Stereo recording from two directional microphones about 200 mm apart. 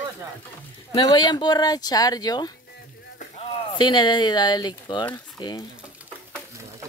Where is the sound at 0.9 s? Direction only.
25° left (ahead or behind).